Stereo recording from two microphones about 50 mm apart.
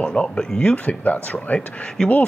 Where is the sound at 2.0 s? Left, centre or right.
Centre.